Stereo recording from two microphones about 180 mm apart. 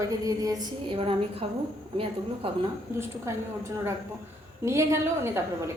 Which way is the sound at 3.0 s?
15° right (ahead or behind).